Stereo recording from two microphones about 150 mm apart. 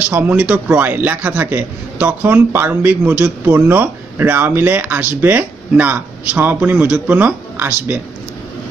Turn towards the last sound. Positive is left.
turn(degrees=-10)  # may be behind; listen again after turning